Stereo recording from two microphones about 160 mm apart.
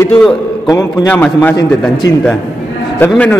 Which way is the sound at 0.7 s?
20° left (ahead or behind).